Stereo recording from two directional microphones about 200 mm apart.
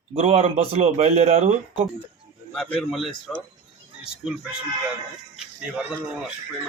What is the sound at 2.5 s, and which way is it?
Speech, 5° left (ahead or behind).